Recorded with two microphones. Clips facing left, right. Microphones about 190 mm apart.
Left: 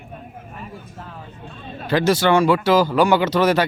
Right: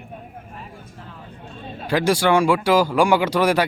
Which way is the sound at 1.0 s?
65° left (ahead or behind).